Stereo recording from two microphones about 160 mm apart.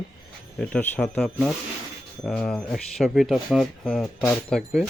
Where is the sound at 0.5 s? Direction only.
5° left (ahead or behind).